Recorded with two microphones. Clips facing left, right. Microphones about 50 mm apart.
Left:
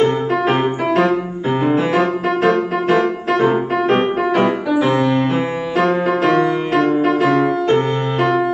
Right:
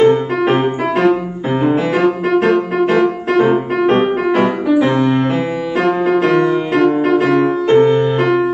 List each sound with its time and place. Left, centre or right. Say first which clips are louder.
0.0 s music: right 4 dB; centre
2.0 s music: right 3 dB; right
6.8 s music: right 2 dB; right